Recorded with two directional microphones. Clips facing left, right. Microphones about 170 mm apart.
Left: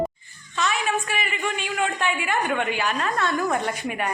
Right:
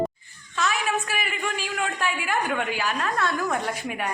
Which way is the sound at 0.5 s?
Centre (ahead or behind).